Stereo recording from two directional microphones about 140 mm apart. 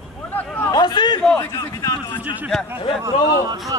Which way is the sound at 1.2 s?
5° left (ahead or behind).